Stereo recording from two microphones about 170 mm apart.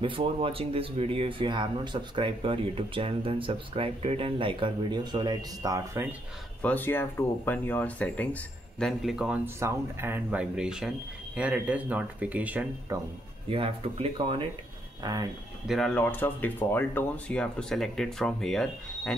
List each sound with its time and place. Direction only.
0.0 s speech: 30° right (ahead or behind)
6.6 s speech: 10° left (ahead or behind); by 12.6 s 10° right (ahead or behind)
13.5 s speech: 35° right (ahead or behind)
15.6 s speech: centre (ahead or behind)